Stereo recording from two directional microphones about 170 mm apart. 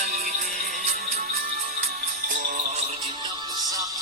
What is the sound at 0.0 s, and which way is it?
Music, 60° right (ahead or behind).